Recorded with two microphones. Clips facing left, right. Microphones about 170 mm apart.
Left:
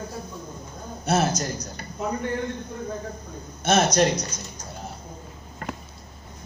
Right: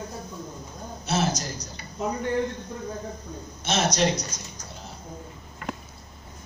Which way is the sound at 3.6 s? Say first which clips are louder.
Left 4 dB; 55° left (ahead or behind).